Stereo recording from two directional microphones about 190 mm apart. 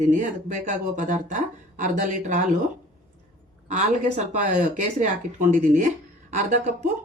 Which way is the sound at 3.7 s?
40° right (ahead or behind).